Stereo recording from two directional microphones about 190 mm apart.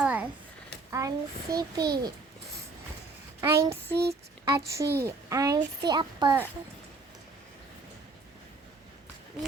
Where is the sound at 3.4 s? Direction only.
15° right (ahead or behind).